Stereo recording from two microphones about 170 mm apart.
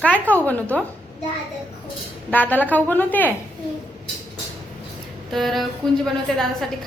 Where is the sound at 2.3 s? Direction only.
10° left (ahead or behind).